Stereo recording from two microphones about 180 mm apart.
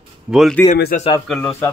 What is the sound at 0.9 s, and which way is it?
Speech, 45° left (ahead or behind).